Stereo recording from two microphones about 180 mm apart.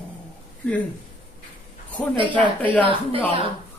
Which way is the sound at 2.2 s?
30° right (ahead or behind).